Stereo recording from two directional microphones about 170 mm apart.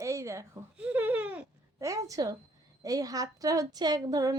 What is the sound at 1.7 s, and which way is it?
A woman's voice, 20° right (ahead or behind).